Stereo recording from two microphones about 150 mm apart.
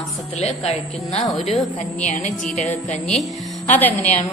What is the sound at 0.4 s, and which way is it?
A woman's voice, 45° left (ahead or behind).